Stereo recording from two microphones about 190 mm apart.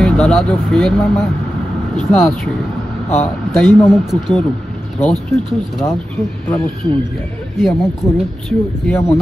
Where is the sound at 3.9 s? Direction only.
Centre (ahead or behind).